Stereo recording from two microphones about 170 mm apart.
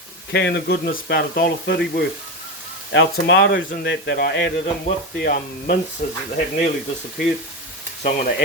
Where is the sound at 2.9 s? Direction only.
90° left.